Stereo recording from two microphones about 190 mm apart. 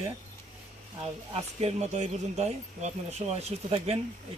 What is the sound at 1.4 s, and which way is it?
Speech, 30° right (ahead or behind).